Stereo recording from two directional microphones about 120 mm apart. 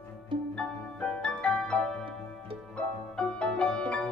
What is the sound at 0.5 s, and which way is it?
Music, 5° left (ahead or behind).